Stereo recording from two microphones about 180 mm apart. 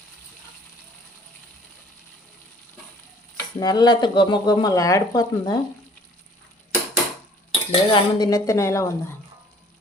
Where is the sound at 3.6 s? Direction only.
20° left (ahead or behind).